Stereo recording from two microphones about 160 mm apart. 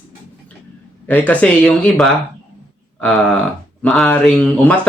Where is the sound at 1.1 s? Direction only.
10° left (ahead or behind).